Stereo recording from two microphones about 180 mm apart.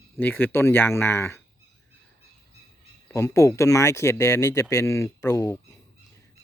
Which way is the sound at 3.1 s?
15° left (ahead or behind).